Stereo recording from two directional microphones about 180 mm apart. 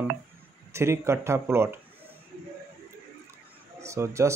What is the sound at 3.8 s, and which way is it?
Speech, 15° right (ahead or behind).